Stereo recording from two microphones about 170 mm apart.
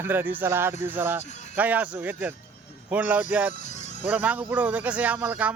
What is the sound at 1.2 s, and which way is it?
Music, 45° left (ahead or behind).